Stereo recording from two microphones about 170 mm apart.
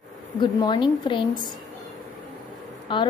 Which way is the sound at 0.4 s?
25° left (ahead or behind).